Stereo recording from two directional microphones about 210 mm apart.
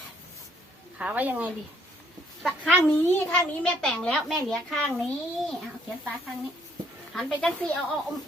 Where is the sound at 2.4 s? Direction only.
5° left (ahead or behind).